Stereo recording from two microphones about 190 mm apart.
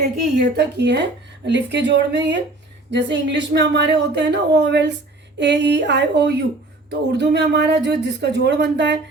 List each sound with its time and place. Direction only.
0.3 s speech: 60° right (ahead or behind)